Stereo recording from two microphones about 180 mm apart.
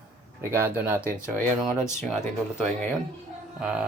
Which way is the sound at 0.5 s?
10° right (ahead or behind).